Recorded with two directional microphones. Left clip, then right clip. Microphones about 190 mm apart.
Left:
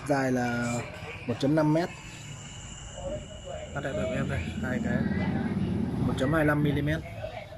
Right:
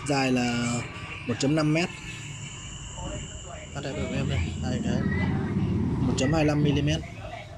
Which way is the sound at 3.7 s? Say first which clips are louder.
Left 1 dB; 15° right (ahead or behind).